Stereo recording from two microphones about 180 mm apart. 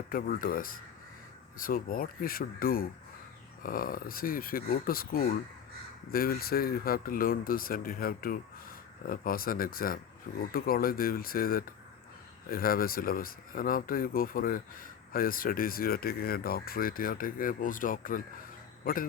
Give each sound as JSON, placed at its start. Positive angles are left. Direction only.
{"t": 0.1, "sound": "speech", "side_deg": 50}